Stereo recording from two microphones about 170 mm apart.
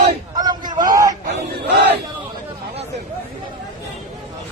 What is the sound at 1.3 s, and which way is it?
Battle cry, 80° right.